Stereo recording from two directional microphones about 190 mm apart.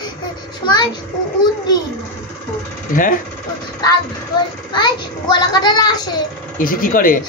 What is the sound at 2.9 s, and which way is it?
Speech, 45° left (ahead or behind).